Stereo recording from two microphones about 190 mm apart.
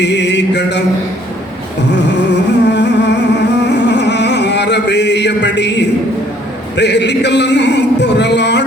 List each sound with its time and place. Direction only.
0.0 s mantra: 65° left (ahead or behind)
1.9 s music: 65° left (ahead or behind)
6.7 s a sound: 65° left (ahead or behind)